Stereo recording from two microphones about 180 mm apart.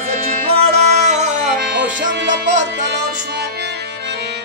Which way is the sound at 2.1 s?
70° right (ahead or behind).